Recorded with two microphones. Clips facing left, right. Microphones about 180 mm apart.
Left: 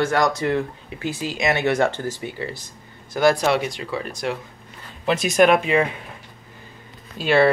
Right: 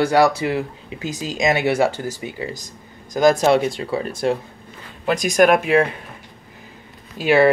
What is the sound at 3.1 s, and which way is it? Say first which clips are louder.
Speech: right 3 dB; 20° right (ahead or behind).